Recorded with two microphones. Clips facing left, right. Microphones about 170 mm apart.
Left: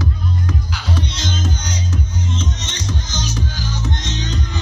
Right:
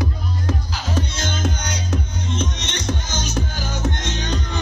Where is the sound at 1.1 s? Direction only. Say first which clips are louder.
Even; 55° right (ahead or behind).